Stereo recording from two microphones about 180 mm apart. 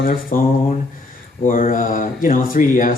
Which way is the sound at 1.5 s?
50° left (ahead or behind).